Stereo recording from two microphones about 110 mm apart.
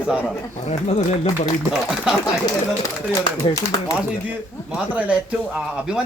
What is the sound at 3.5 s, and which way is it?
Speech, 35° left (ahead or behind).